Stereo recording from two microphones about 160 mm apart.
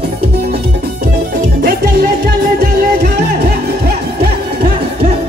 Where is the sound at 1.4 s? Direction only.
70° right (ahead or behind).